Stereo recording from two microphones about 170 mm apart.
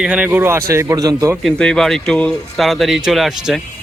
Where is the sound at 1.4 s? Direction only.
5° left (ahead or behind).